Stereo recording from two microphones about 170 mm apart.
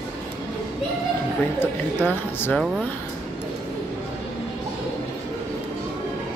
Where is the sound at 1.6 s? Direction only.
10° left (ahead or behind).